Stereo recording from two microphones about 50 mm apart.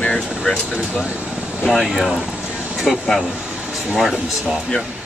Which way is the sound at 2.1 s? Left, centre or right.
Right.